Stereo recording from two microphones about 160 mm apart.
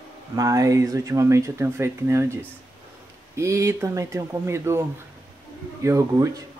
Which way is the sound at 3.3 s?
20° right (ahead or behind).